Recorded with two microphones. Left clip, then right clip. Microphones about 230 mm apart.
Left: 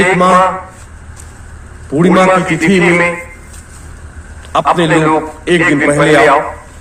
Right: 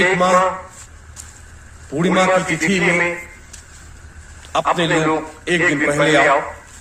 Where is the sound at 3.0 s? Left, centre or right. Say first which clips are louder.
Left 6 dB; left.